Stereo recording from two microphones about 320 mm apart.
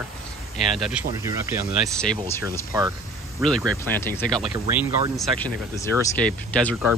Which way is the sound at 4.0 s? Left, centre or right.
Centre.